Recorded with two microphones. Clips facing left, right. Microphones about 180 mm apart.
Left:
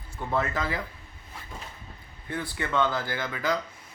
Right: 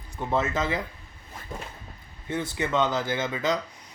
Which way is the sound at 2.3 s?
20° right (ahead or behind).